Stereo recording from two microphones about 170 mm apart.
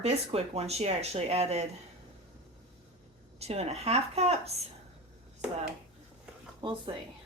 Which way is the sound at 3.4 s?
40° right (ahead or behind).